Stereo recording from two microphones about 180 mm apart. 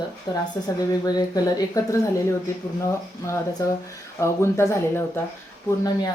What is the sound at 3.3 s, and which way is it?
A woman's voice, 15° left (ahead or behind).